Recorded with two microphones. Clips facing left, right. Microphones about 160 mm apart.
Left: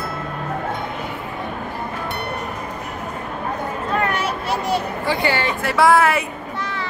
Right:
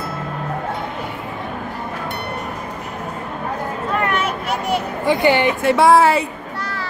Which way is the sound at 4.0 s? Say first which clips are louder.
Right 1 dB; 35° left (ahead or behind).